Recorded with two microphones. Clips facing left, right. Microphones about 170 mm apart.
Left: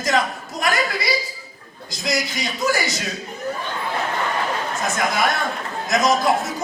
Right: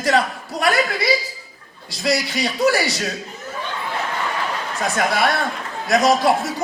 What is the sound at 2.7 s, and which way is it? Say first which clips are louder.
Speech: right 2 dB; 35° right (ahead or behind).